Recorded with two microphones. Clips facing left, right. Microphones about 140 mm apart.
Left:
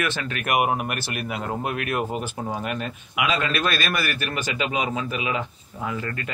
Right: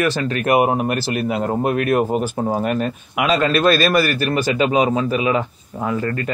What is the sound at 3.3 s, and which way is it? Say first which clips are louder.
A man's voice: right 11 dB; 40° right (ahead or behind).